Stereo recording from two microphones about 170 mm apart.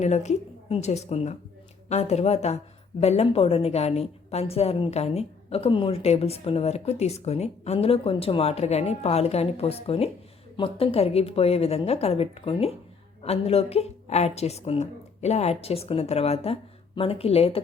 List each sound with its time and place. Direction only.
0.0 s a woman's voice: 40° left (ahead or behind)